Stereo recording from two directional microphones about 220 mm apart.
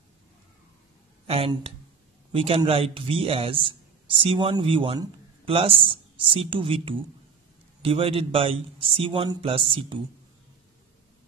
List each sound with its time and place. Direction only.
1.2 s a man's voice: 25° right (ahead or behind)